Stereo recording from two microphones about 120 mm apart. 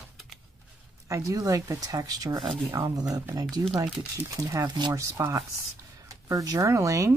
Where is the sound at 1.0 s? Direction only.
25° right (ahead or behind).